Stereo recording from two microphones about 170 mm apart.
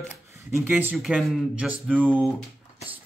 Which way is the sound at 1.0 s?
Centre (ahead or behind).